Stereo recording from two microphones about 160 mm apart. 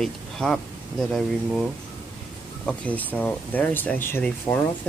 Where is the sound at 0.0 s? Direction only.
5° left (ahead or behind).